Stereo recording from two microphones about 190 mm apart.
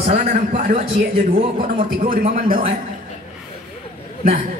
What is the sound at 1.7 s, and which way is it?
Speech, 50° right (ahead or behind).